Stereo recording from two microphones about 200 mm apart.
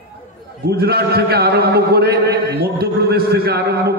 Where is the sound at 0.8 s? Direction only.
50° right (ahead or behind).